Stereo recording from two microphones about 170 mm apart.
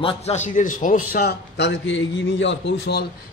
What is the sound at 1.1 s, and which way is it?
A man's voice, 70° left (ahead or behind).